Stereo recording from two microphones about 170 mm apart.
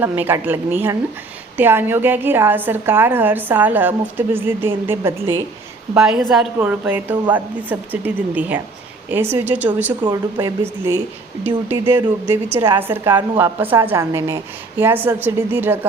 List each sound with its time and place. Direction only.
0.0 s a woman's voice: 10° right (ahead or behind)
5.9 s a woman's voice: 5° right (ahead or behind)
10.0 s a woman's voice: 25° right (ahead or behind)